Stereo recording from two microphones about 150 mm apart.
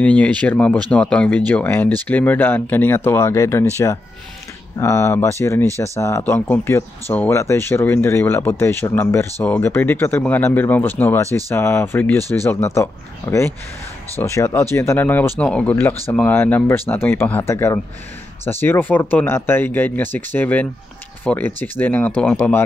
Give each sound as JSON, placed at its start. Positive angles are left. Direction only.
{"t": 0.0, "sound": "speech", "side_deg": 10}
{"t": 11.2, "sound": "speech", "side_deg": -25}
{"t": 11.5, "sound": "speech", "side_deg": 15}